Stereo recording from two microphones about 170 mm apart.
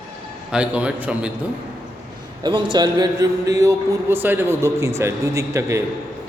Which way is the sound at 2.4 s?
30° right (ahead or behind).